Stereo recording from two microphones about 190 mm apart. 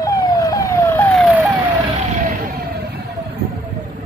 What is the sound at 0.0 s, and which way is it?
Emergency vehicle, 20° left (ahead or behind).